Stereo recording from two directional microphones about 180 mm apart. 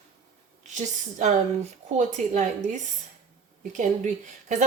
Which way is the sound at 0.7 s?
40° right (ahead or behind).